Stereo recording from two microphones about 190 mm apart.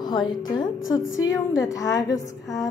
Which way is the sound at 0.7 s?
90° left.